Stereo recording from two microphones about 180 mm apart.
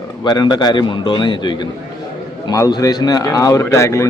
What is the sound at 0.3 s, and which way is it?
A man's voice, 25° left (ahead or behind).